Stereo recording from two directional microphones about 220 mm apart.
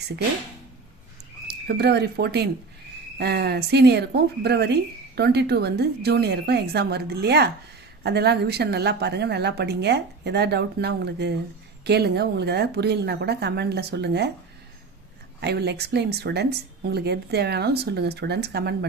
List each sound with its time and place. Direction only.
1.5 s speech: 50° right (ahead or behind)
15.4 s speech: 50° right (ahead or behind)